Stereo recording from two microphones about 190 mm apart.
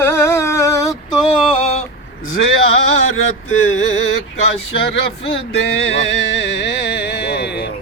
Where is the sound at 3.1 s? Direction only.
90° left.